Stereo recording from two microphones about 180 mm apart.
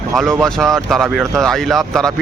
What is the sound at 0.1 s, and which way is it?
Speech, centre (ahead or behind).